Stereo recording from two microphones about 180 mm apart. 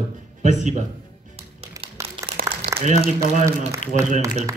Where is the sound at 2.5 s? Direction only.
35° right (ahead or behind).